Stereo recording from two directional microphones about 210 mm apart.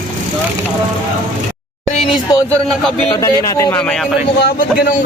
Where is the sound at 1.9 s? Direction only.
25° left (ahead or behind).